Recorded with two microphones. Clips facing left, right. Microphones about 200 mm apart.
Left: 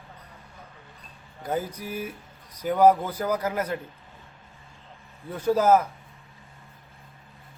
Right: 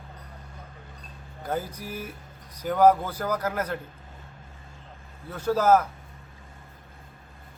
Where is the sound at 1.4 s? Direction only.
10° left (ahead or behind).